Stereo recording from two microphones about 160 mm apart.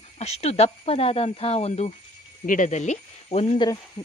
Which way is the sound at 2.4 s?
55° left (ahead or behind).